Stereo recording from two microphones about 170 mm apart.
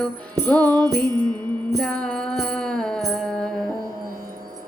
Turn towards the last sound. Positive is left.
turn(degrees=5)  # may be behind; listen again after turning